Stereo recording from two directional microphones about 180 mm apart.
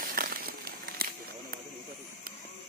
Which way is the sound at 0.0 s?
55° right (ahead or behind).